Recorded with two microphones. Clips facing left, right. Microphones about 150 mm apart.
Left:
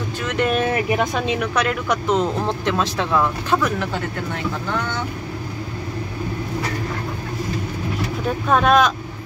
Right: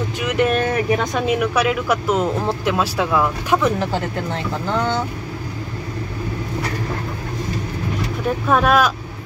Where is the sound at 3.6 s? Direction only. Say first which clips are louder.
Right 3 dB; 35° right (ahead or behind).